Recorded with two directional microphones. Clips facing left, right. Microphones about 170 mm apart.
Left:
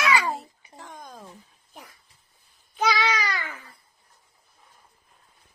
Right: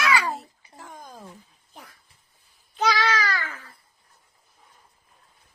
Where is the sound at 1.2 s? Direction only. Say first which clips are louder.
Right 1 dB; 10° left (ahead or behind).